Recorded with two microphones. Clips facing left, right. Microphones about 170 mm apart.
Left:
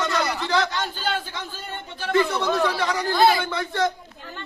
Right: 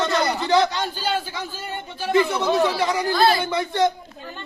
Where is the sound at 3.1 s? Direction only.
20° left (ahead or behind).